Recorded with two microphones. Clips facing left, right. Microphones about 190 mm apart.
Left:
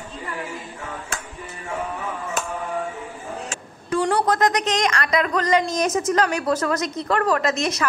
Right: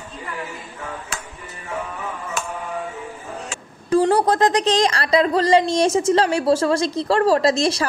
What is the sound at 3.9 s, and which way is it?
A woman's voice, 30° right (ahead or behind).